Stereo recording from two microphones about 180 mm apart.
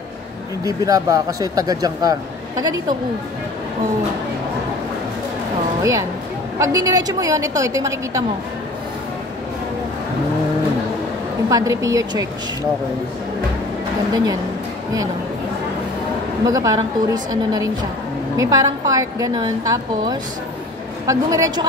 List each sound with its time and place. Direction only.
0.7 s speech: 20° right (ahead or behind)
5.8 s a woman's voice: 15° right (ahead or behind)
11.4 s speech: 20° right (ahead or behind)
14.1 s speech: 20° right (ahead or behind)
16.4 s speech: 20° right (ahead or behind)